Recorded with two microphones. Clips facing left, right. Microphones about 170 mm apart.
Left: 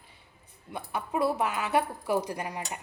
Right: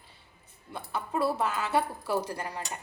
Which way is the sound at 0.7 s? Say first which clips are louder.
Left 1 dB; 15° left (ahead or behind).